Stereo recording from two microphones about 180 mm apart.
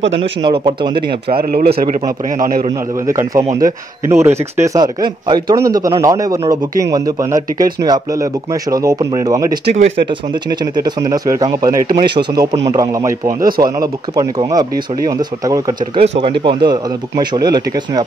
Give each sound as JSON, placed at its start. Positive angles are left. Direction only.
{"t": 0.2, "sound": "speech", "side_deg": -25}
{"t": 0.9, "sound": "speech", "side_deg": -60}
{"t": 3.1, "sound": "speech", "side_deg": -15}
{"t": 10.6, "sound": "speech", "side_deg": -20}
{"t": 16.0, "sound": "speech", "side_deg": -30}